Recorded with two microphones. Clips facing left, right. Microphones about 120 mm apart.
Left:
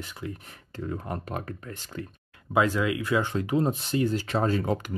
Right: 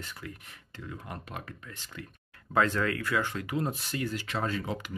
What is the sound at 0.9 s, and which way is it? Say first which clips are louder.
Speech: left 7 dB; 40° left (ahead or behind).